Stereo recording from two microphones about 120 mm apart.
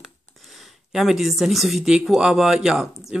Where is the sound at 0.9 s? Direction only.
Centre (ahead or behind).